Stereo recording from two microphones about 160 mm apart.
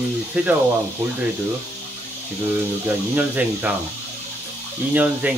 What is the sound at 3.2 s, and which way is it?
Speech, 10° right (ahead or behind).